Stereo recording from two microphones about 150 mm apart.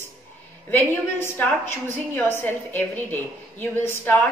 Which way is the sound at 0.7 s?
15° left (ahead or behind).